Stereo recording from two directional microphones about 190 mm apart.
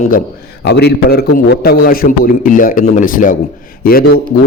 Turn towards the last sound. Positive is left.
turn(degrees=50)  # may be behind; listen again after turning